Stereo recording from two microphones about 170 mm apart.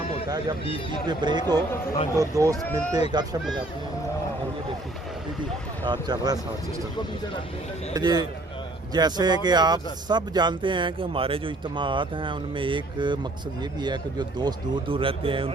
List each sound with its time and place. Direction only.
1.0 s speech: 25° right (ahead or behind)
5.8 s speech: 25° right (ahead or behind)
7.9 s speech: 25° right (ahead or behind)